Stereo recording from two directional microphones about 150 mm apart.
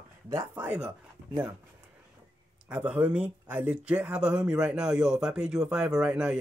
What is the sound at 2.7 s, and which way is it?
A man's voice, 10° right (ahead or behind).